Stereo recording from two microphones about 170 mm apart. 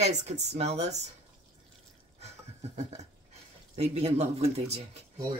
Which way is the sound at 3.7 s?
40° right (ahead or behind).